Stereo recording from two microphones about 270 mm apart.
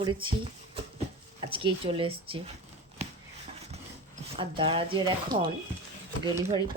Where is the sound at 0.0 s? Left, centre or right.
Centre.